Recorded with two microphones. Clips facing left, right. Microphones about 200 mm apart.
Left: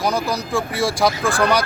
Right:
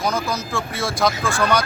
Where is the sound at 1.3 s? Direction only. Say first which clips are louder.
Left 2 dB; 35° left (ahead or behind).